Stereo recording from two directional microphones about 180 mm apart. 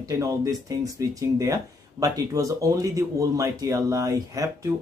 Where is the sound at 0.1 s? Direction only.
20° right (ahead or behind).